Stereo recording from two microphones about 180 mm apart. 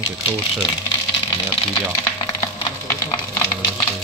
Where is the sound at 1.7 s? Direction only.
25° left (ahead or behind).